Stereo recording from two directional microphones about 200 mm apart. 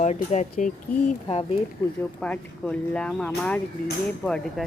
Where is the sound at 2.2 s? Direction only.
5° left (ahead or behind).